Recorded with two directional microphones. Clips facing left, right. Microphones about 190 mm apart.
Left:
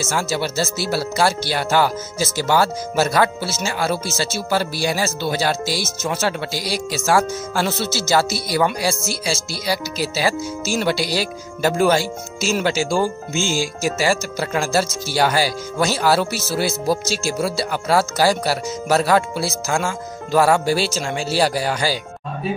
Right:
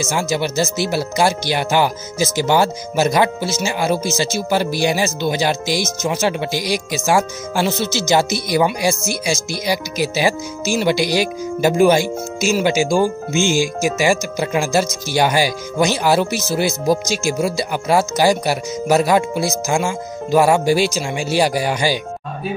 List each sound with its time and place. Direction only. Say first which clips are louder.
0.0 s speech: right 2 dB; 15° right (ahead or behind)